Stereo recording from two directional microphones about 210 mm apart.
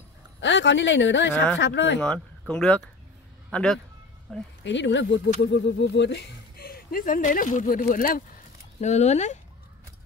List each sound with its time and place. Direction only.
0.4 s speech: 60° left (ahead or behind)
2.0 s speech: 5° left (ahead or behind)
4.6 s speech: 60° left (ahead or behind); by 9.4 s 35° left (ahead or behind)